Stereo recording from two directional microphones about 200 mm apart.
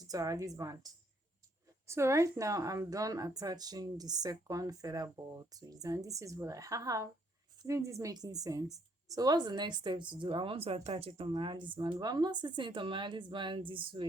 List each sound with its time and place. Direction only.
0.1 s a woman's voice: 15° right (ahead or behind)
1.9 s a woman's voice: 15° right (ahead or behind)